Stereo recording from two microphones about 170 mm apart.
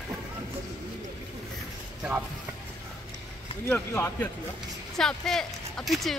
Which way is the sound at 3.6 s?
15° left (ahead or behind).